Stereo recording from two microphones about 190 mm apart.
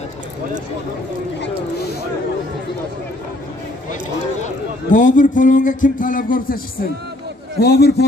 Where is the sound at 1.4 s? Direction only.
55° left (ahead or behind).